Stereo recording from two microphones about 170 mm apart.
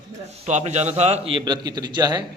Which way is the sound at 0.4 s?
45° right (ahead or behind).